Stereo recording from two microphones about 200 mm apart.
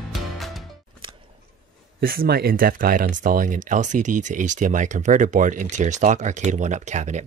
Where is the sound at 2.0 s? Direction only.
45° right (ahead or behind).